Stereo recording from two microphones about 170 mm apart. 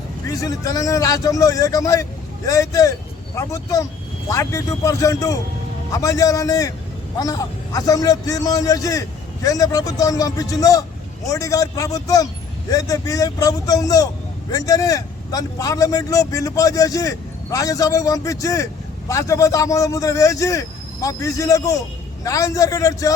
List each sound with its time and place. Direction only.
0.3 s speech: 20° left (ahead or behind)